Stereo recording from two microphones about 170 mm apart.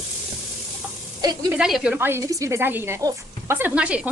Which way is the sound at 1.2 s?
25° right (ahead or behind).